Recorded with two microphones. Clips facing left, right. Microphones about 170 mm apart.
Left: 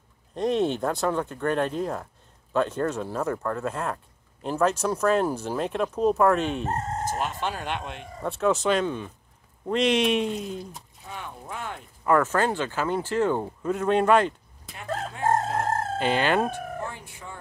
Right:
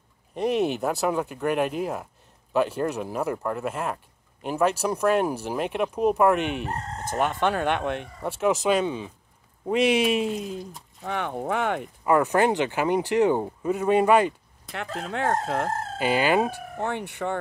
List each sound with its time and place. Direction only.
0.3 s speech: 5° right (ahead or behind)
7.1 s speech: 60° right (ahead or behind)
8.2 s speech: 10° right (ahead or behind)
11.1 s speech: 70° right (ahead or behind)
12.1 s speech: 15° right (ahead or behind)
15.0 s speech: 75° right (ahead or behind)
16.0 s speech: 5° right (ahead or behind)
16.8 s speech: 70° right (ahead or behind)